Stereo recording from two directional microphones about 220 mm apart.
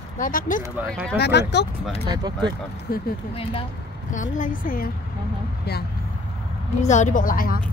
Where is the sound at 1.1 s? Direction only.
50° left (ahead or behind).